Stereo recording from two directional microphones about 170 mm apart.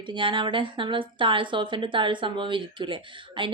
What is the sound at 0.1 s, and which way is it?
A woman's voice, 30° right (ahead or behind).